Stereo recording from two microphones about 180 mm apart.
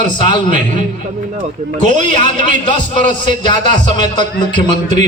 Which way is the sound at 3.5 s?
25° left (ahead or behind).